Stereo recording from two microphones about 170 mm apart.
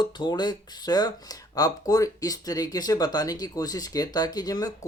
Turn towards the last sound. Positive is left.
turn(degrees=20)  # may be behind; listen again after turning